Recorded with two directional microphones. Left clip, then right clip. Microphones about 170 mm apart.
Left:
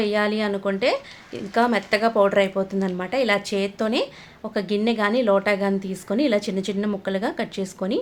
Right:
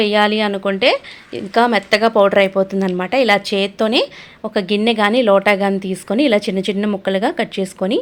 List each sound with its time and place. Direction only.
0.0 s speech: 30° right (ahead or behind)